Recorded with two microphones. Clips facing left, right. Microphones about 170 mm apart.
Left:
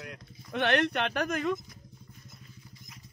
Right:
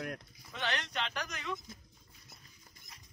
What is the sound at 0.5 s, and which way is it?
Speech, 60° left (ahead or behind).